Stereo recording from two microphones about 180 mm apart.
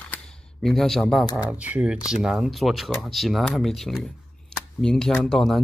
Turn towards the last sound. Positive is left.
turn(degrees=0)  # may be behind; listen again after turning